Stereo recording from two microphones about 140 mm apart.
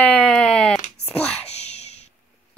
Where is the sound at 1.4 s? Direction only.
50° left (ahead or behind).